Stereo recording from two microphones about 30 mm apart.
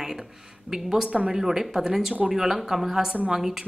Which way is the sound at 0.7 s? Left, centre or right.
Centre.